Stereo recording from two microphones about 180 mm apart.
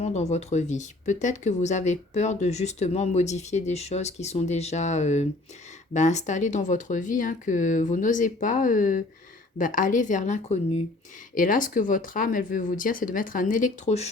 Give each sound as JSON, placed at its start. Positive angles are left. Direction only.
{"t": 0.0, "sound": "speech", "side_deg": 35}